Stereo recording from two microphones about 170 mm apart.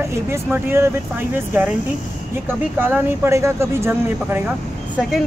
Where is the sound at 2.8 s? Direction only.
15° right (ahead or behind).